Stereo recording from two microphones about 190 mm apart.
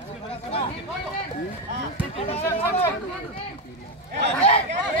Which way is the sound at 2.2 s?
30° left (ahead or behind).